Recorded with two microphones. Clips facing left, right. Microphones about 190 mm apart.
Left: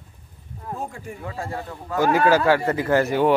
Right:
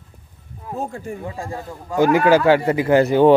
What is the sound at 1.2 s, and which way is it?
A man's voice, 15° right (ahead or behind).